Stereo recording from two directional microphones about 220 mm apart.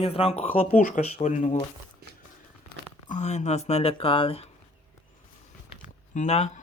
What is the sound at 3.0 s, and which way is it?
Speech, 30° left (ahead or behind).